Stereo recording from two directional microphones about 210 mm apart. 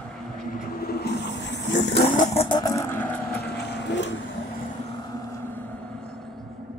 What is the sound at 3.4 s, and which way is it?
Vehicle, 55° left (ahead or behind).